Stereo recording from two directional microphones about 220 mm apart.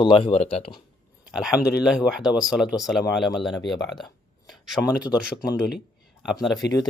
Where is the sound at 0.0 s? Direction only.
25° left (ahead or behind).